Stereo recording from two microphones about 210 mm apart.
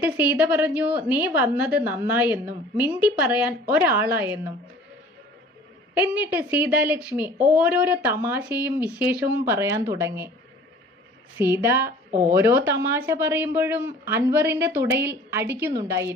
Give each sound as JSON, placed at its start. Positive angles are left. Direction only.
{"t": 0.0, "sound": "a woman's voice", "side_deg": -10}
{"t": 5.9, "sound": "a woman's voice", "side_deg": -10}
{"t": 11.3, "sound": "a woman's voice", "side_deg": -10}